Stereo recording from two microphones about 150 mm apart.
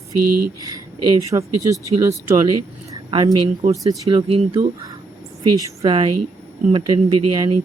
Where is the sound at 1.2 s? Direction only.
20° right (ahead or behind).